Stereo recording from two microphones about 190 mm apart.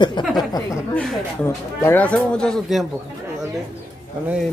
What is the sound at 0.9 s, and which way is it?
A man's voice, 5° left (ahead or behind).